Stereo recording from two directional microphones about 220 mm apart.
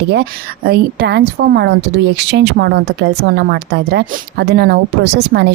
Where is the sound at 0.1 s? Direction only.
45° right (ahead or behind).